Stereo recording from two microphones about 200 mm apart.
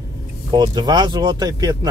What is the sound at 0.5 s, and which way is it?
Speech, 20° right (ahead or behind).